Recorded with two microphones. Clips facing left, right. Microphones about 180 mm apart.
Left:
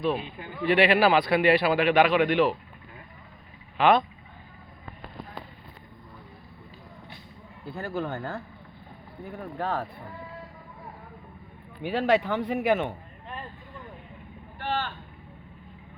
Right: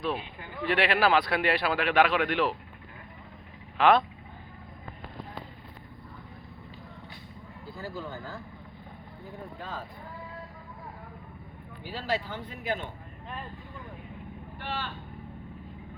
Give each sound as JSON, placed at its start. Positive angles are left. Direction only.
{"t": 0.1, "sound": "a man's voice", "side_deg": 25}
{"t": 0.6, "sound": "a man's voice", "side_deg": 5}
{"t": 3.8, "sound": "speech", "side_deg": 0}
{"t": 7.8, "sound": "speech", "side_deg": 65}
{"t": 9.6, "sound": "speech", "side_deg": 65}
{"t": 11.8, "sound": "speech", "side_deg": 65}
{"t": 14.6, "sound": "speech", "side_deg": 50}